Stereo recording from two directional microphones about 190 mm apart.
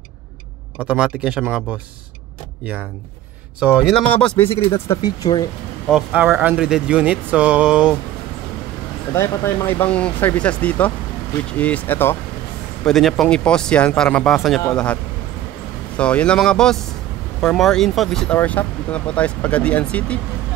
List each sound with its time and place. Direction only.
0.7 s speech: 5° right (ahead or behind)
3.5 s speech: 5° right (ahead or behind)
4.8 s speech: 20° left (ahead or behind)
5.9 s speech: centre (ahead or behind)
9.1 s speech: 15° left (ahead or behind)
16.0 s speech: 5° left (ahead or behind)